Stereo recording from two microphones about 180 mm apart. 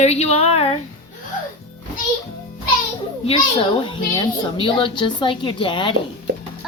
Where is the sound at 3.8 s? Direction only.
25° left (ahead or behind).